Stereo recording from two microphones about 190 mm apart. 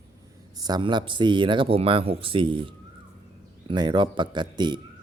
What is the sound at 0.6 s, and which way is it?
Speech, 20° right (ahead or behind).